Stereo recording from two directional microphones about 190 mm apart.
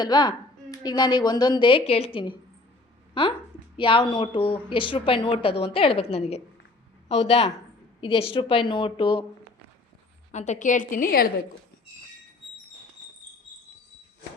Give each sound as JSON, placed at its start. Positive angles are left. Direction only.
{"t": 0.0, "sound": "a woman's voice", "side_deg": 20}
{"t": 10.3, "sound": "a woman's voice", "side_deg": 40}